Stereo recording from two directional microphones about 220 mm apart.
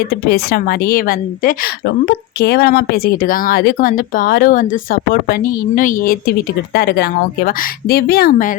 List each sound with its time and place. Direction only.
0.1 s a woman's voice: 45° left (ahead or behind)